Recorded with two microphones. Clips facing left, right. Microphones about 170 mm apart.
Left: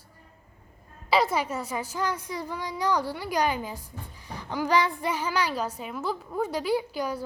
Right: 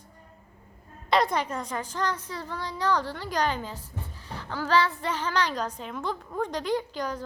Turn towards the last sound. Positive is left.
turn(degrees=10)  # may be behind; listen again after turning